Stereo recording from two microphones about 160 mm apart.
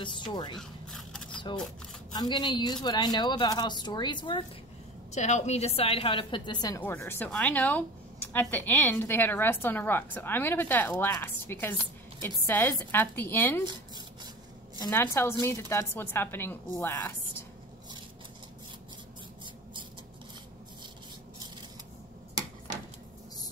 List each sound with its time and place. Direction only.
0.0 s a woman's voice: 30° left (ahead or behind)
0.6 s a sound: 5° left (ahead or behind)
1.3 s shuffling cards: 30° left (ahead or behind)
2.1 s a woman's voice: 25° left (ahead or behind)
5.1 s a woman's voice: 45° left (ahead or behind); by 6.8 s 25° left (ahead or behind)
6.8 s a woman's voice: 15° left (ahead or behind)
14.8 s a woman's voice: 15° left (ahead or behind)